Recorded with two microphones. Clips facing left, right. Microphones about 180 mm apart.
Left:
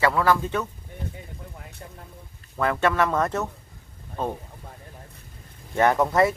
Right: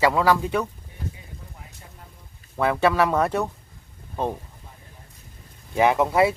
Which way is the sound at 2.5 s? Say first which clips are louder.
Right 2 dB; 10° right (ahead or behind).